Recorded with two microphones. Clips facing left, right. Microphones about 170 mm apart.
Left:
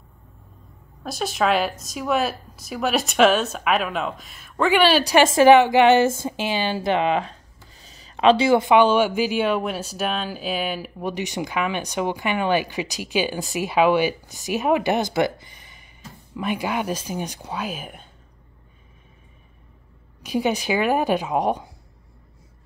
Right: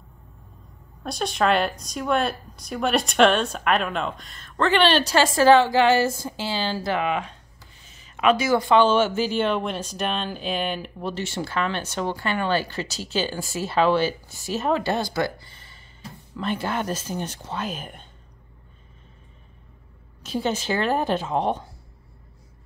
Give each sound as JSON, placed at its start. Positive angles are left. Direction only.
{"t": 1.0, "sound": "speech", "side_deg": 0}
{"t": 20.2, "sound": "speech", "side_deg": 15}